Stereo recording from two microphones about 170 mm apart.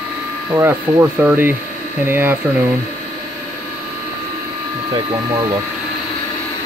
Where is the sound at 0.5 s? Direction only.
15° right (ahead or behind).